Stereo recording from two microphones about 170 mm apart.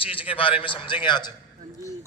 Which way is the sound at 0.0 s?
30° left (ahead or behind).